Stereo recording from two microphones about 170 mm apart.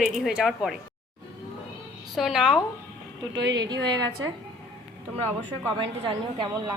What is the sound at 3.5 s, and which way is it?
Speech, 25° right (ahead or behind).